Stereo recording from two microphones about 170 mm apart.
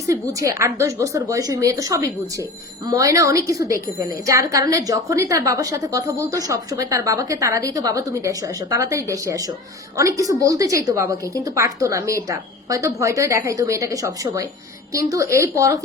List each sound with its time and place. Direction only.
0.1 s a woman's voice: 20° right (ahead or behind)